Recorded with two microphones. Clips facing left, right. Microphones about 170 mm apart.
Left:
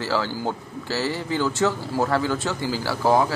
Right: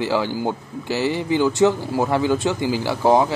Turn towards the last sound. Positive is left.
turn(degrees=-20)  # may be behind; listen again after turning